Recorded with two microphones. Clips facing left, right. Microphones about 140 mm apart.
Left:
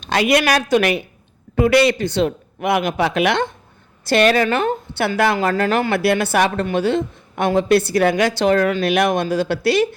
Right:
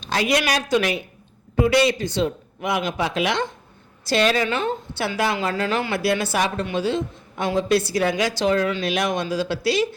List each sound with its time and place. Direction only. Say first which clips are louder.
0.0 s a woman's voice: left 5 dB; 65° left (ahead or behind)